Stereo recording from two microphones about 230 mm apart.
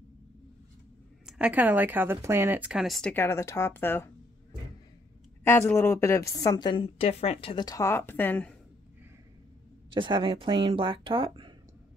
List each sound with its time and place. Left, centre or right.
1.2 s speech: centre
5.4 s a woman's voice: centre
9.9 s speech: right